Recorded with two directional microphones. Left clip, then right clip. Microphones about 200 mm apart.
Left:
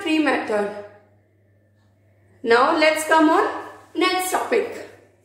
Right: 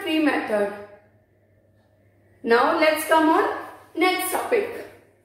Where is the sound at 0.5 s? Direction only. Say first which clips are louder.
Even; 45° left (ahead or behind).